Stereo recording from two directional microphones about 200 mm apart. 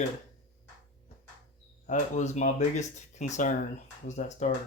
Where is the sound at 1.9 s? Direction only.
35° left (ahead or behind).